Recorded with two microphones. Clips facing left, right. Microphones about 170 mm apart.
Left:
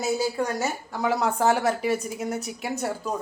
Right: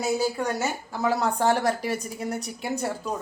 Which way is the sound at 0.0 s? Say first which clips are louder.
Even; centre (ahead or behind).